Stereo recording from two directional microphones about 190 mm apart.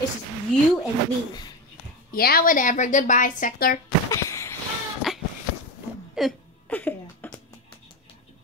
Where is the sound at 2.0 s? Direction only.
50° left (ahead or behind).